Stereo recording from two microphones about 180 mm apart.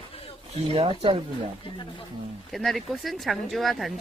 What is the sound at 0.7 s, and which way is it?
Speech, 30° right (ahead or behind).